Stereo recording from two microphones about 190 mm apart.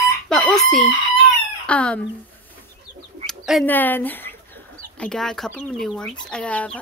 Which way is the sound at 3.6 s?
10° left (ahead or behind).